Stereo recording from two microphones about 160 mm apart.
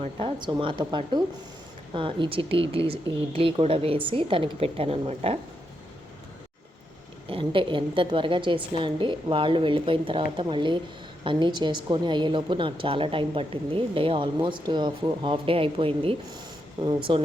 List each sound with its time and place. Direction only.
0.2 s a woman's voice: 30° right (ahead or behind)
7.3 s a woman's voice: 35° right (ahead or behind)